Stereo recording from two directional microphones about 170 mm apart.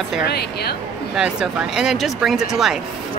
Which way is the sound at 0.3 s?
70° left (ahead or behind).